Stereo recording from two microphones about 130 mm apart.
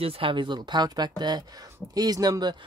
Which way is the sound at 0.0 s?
45° right (ahead or behind).